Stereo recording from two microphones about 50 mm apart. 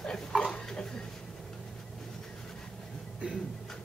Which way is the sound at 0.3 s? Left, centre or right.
Centre.